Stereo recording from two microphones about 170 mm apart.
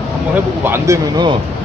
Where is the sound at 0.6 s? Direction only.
20° right (ahead or behind).